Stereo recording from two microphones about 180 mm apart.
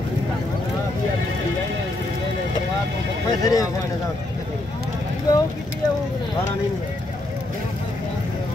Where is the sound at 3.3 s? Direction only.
20° left (ahead or behind).